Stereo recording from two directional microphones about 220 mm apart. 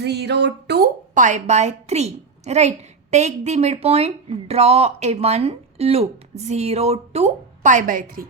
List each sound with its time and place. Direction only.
0.0 s a woman's voice: 50° right (ahead or behind)